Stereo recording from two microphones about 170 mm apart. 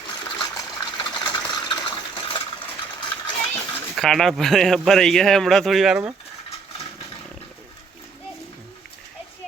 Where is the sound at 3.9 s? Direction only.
Centre (ahead or behind).